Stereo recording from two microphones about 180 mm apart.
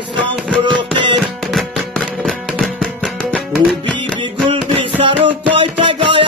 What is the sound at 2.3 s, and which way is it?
Music, centre (ahead or behind).